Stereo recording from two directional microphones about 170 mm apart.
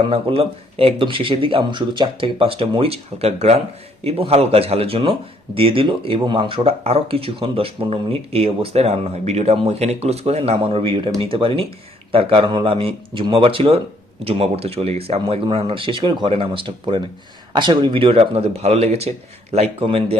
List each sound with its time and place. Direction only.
0.0 s speech: 30° right (ahead or behind)